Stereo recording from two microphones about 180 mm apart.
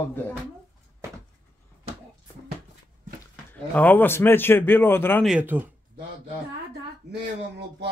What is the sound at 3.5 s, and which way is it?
Speech, 10° left (ahead or behind).